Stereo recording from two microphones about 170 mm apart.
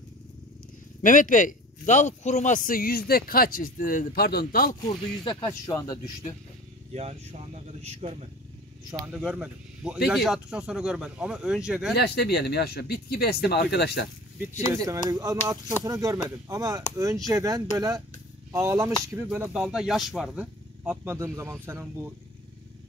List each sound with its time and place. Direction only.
1.0 s a man's voice: 50° left (ahead or behind)
4.8 s speech: 30° left (ahead or behind)
6.9 s speech: 35° right (ahead or behind)
8.9 s speech: 15° right (ahead or behind)
11.9 s speech: 75° left (ahead or behind)
14.7 s speech: 20° right (ahead or behind)